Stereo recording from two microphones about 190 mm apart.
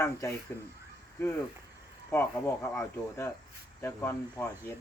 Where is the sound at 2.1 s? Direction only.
15° left (ahead or behind).